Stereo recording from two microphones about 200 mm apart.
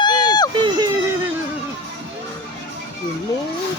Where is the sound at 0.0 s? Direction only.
20° left (ahead or behind).